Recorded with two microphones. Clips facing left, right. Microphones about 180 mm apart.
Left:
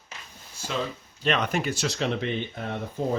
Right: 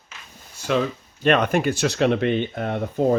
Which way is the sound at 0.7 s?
60° right (ahead or behind).